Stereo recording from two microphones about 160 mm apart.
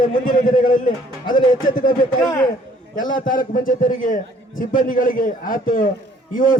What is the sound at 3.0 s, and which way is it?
A man's voice, 60° left (ahead or behind).